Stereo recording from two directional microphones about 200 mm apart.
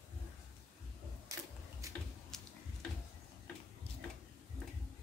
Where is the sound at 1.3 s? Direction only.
15° right (ahead or behind).